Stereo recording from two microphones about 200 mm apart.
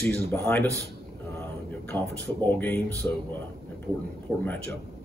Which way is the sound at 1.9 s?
10° left (ahead or behind).